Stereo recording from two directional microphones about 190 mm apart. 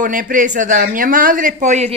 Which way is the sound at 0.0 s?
45° right (ahead or behind).